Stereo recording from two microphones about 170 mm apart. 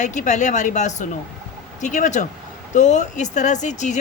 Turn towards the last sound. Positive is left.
turn(degrees=45)  # may be behind; listen again after turning